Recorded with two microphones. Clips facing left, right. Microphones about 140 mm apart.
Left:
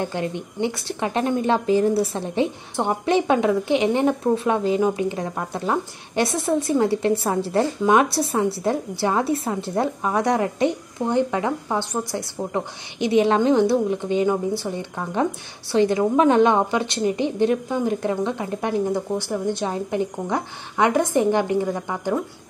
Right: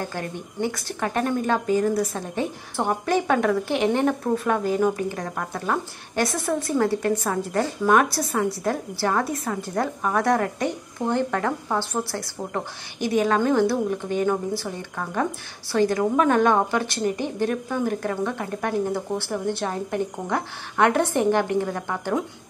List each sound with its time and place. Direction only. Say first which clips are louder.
0.0 s a woman's voice: left 5 dB; 20° left (ahead or behind)